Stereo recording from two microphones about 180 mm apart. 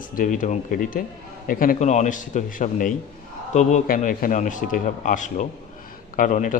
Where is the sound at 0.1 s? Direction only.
45° left (ahead or behind).